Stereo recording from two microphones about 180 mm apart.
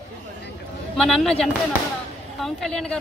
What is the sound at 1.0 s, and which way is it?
Speech, centre (ahead or behind).